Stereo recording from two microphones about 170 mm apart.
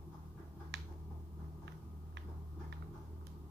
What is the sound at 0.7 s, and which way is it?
Finger snapping, 90° right.